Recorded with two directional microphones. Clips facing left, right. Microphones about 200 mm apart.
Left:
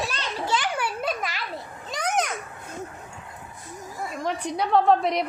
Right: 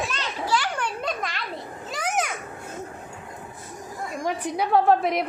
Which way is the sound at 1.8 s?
5° right (ahead or behind).